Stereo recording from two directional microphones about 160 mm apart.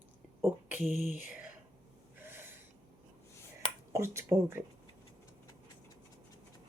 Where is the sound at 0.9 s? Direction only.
55° right (ahead or behind).